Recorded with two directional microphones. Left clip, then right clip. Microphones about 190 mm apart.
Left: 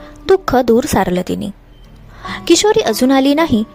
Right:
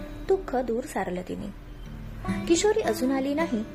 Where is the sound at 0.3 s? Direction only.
50° left (ahead or behind).